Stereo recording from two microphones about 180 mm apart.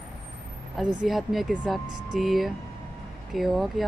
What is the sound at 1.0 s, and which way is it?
Speech, centre (ahead or behind).